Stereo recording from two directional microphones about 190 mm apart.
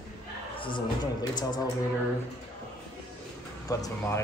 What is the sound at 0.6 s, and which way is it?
A man's voice, 25° left (ahead or behind).